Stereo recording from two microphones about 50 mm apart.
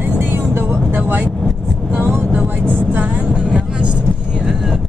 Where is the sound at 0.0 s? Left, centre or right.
Right.